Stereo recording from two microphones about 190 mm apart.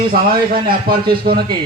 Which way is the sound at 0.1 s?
55° right (ahead or behind).